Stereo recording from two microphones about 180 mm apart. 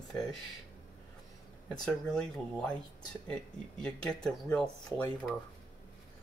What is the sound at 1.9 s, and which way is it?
Speech, 5° left (ahead or behind).